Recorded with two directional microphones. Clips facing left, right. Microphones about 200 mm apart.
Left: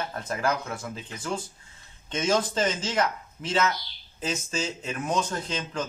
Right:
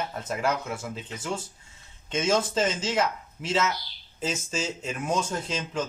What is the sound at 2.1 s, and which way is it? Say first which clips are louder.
A man's voice: right 1 dB; 5° right (ahead or behind).